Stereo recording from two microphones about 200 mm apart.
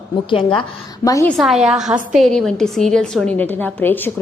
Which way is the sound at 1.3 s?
Centre (ahead or behind).